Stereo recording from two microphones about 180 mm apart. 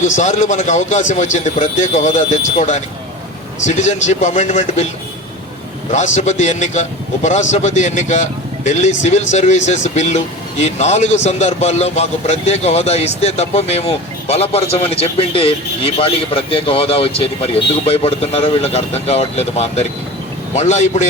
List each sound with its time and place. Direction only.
0.0 s a man's voice: 40° left (ahead or behind)
5.9 s a man's voice: 40° left (ahead or behind)